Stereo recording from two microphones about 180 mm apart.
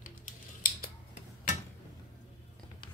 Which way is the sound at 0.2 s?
50° left (ahead or behind).